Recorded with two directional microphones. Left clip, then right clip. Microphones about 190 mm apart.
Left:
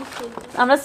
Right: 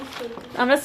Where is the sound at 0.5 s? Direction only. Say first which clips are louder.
Left 3 dB; centre (ahead or behind).